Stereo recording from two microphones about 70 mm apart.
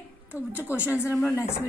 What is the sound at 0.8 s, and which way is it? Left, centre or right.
Speech, right.